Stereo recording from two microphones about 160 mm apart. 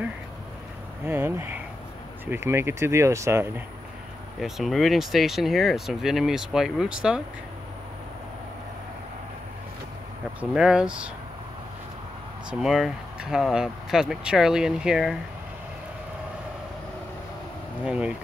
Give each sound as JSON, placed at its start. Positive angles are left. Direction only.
{"t": 1.0, "sound": "speech", "side_deg": -15}
{"t": 4.4, "sound": "speech", "side_deg": 0}
{"t": 10.5, "sound": "speech", "side_deg": -5}
{"t": 12.4, "sound": "speech", "side_deg": 0}
{"t": 17.8, "sound": "speech", "side_deg": -5}